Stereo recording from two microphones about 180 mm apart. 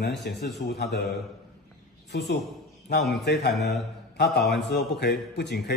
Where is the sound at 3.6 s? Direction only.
65° left (ahead or behind).